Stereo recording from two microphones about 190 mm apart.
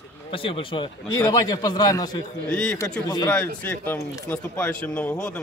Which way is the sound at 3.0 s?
20° left (ahead or behind).